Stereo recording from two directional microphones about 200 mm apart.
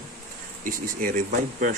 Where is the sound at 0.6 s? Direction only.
45° right (ahead or behind).